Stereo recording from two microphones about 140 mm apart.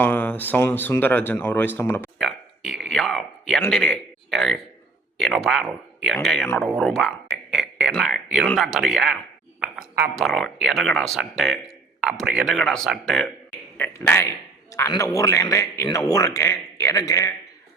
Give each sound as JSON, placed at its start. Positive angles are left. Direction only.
{"t": 0.0, "sound": "speech", "side_deg": 15}
{"t": 2.1, "sound": "a sound", "side_deg": 0}
{"t": 3.7, "sound": "a man's voice", "side_deg": 5}
{"t": 10.2, "sound": "speech", "side_deg": 5}
{"t": 13.7, "sound": "speech", "side_deg": 15}